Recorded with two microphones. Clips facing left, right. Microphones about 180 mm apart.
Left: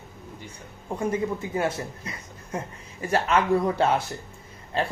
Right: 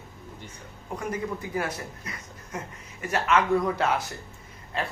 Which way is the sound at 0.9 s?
25° left (ahead or behind).